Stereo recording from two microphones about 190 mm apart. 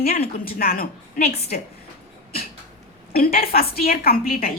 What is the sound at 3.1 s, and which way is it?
A woman's voice, 50° left (ahead or behind).